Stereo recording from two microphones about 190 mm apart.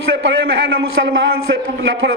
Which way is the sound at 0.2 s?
85° right.